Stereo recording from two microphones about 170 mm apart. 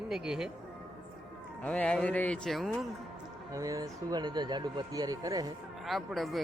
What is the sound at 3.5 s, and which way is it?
Speech, 20° right (ahead or behind).